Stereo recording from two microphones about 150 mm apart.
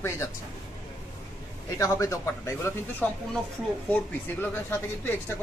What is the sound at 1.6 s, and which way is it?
Speech, 20° left (ahead or behind).